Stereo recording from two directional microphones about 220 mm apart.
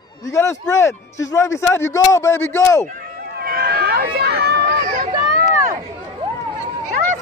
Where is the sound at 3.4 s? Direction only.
45° right (ahead or behind).